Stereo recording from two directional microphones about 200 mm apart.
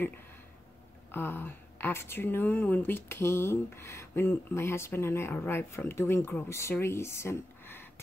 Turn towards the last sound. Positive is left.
turn(degrees=10)  # may be behind; listen again after turning